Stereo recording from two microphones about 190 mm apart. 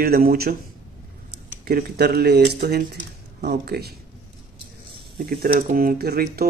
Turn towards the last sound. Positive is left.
turn(degrees=-55)  # may be behind; listen again after turning